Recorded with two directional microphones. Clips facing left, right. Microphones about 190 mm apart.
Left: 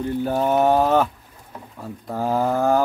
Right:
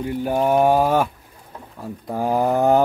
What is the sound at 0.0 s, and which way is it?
Speech, 10° right (ahead or behind).